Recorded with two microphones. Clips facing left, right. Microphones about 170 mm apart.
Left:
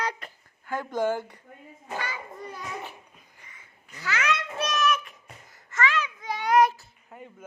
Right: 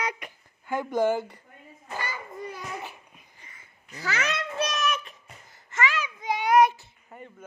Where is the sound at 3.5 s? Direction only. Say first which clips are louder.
Right 4 dB; 35° right (ahead or behind).